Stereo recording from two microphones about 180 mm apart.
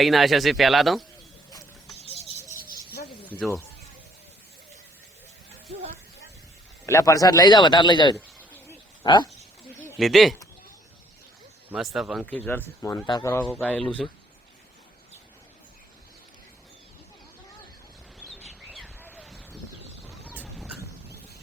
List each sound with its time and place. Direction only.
0.0 s speech: centre (ahead or behind)
6.8 s a man's voice: 20° left (ahead or behind)
8.5 s bird: 10° left (ahead or behind)
9.0 s a man's voice: 25° left (ahead or behind)
10.0 s speech: centre (ahead or behind)
11.7 s speech: centre (ahead or behind)
19.1 s a sound: centre (ahead or behind)
20.1 s vehicle: 5° right (ahead or behind)